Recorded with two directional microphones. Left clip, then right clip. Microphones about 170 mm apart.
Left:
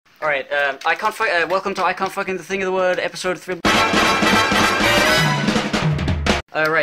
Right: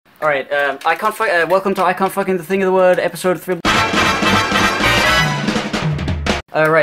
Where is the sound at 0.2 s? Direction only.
5° left (ahead or behind).